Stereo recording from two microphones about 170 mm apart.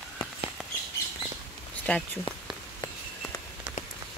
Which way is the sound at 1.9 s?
5° left (ahead or behind).